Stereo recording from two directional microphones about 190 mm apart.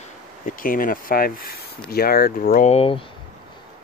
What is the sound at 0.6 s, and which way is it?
Speech, 45° left (ahead or behind).